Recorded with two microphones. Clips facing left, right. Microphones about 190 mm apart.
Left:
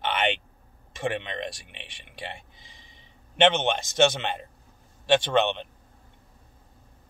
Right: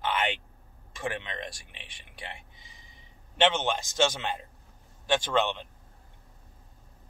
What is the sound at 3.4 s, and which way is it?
Speech, 20° left (ahead or behind).